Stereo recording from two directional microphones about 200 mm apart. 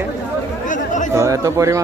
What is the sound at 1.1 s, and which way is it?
Speech, 15° right (ahead or behind).